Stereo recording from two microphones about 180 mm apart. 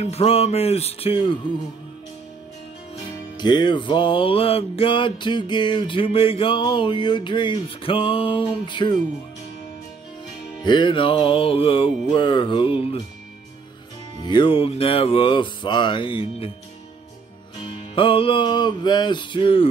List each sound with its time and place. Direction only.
0.0 s music: 35° left (ahead or behind)
3.3 s music: 25° left (ahead or behind)
10.6 s music: 25° left (ahead or behind)
14.2 s music: 25° left (ahead or behind)
17.9 s music: 30° left (ahead or behind)